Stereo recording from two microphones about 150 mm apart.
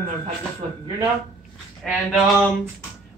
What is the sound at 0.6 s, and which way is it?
Speech, 40° right (ahead or behind).